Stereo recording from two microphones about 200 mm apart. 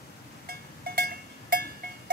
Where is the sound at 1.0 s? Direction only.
45° right (ahead or behind).